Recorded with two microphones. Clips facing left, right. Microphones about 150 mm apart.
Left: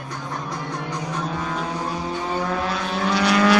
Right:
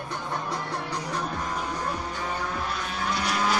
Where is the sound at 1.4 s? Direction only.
90° left.